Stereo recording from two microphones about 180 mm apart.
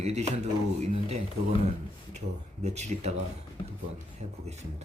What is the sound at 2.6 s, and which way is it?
Speech, 40° right (ahead or behind).